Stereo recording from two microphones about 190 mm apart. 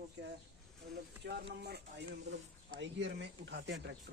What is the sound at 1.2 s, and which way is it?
Speech, 60° right (ahead or behind).